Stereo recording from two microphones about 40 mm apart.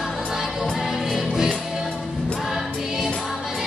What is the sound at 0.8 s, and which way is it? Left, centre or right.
Music, centre.